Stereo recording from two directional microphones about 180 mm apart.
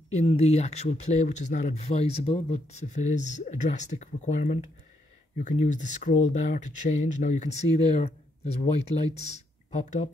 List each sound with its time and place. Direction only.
0.1 s speech: 40° left (ahead or behind)